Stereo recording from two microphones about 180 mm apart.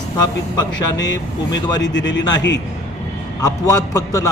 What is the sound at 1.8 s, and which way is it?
Speech, 85° left.